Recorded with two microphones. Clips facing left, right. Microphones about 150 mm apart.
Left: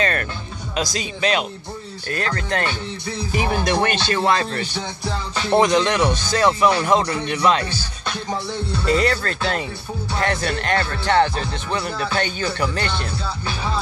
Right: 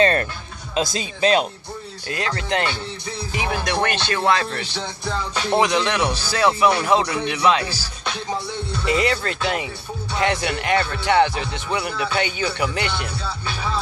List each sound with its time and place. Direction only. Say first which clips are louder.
0.0 s music: right 5 dB; 30° right (ahead or behind)
0.9 s speech: right 3 dB; 30° right (ahead or behind)
2.0 s speech: left 1 dB; 15° right (ahead or behind)
3.6 s speech: left 2 dB; 5° left (ahead or behind)
4.7 s music: even; 10° left (ahead or behind)
5.6 s speech: left 3 dB; 10° right (ahead or behind)